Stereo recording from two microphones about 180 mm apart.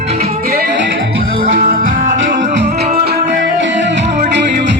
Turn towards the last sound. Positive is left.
turn(degrees=-90)